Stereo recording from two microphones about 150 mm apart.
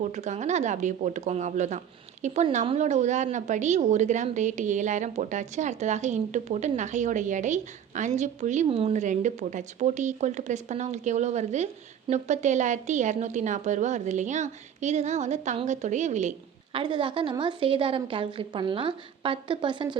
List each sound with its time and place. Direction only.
0.0 s a woman's voice: 55° right (ahead or behind)
8.6 s a woman's voice: 40° right (ahead or behind)
16.7 s a woman's voice: 35° right (ahead or behind)